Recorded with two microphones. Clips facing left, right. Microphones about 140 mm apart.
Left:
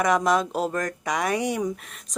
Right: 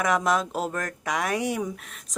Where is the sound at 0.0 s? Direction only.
Centre (ahead or behind).